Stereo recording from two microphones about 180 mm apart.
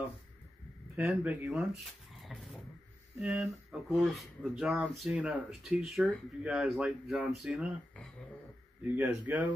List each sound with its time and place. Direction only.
0.9 s speech: 10° right (ahead or behind)
2.2 s a sound: centre (ahead or behind)
3.2 s speech: 5° right (ahead or behind)